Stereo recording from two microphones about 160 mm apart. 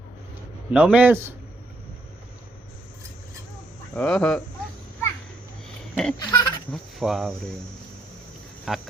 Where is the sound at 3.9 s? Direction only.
5° left (ahead or behind).